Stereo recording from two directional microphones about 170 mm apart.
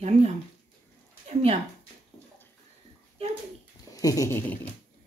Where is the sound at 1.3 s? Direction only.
40° right (ahead or behind).